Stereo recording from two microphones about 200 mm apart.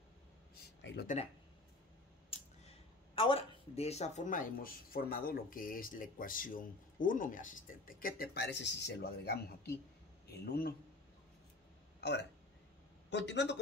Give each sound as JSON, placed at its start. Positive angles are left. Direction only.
{"t": 2.3, "sound": "a man's voice", "side_deg": 30}
{"t": 12.0, "sound": "speech", "side_deg": 60}